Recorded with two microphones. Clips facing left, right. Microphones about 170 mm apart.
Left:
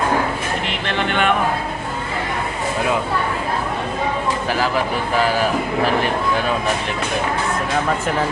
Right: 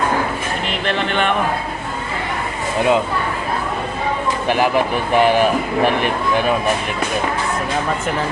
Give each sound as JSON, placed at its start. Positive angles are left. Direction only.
{"t": 4.4, "sound": "speech", "side_deg": -20}